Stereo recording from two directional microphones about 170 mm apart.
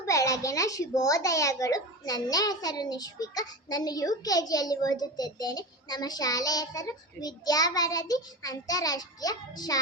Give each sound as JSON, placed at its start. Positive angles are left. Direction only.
{"t": 0.0, "sound": "a woman's voice", "side_deg": 20}